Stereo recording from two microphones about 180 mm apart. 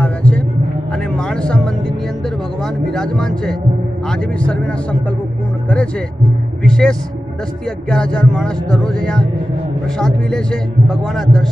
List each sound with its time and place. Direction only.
0.0 s a sound: 5° left (ahead or behind)
1.1 s music: 5° left (ahead or behind)
2.9 s a man's voice: 5° left (ahead or behind)
6.6 s a man's voice: 5° left (ahead or behind)